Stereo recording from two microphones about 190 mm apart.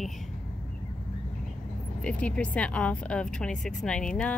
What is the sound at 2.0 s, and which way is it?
A woman's voice, 5° left (ahead or behind).